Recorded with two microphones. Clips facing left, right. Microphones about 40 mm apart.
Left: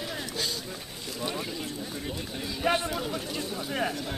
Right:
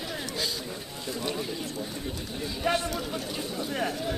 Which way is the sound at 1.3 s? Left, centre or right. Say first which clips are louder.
Right 1 dB; centre.